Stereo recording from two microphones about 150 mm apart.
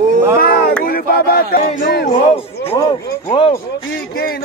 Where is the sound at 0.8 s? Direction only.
80° left.